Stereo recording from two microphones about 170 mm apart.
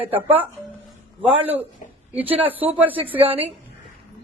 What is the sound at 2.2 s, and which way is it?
Speech, 35° right (ahead or behind).